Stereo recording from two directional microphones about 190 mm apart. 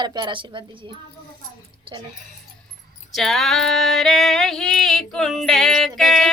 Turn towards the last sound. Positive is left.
turn(degrees=0)  # may be behind; listen again after turning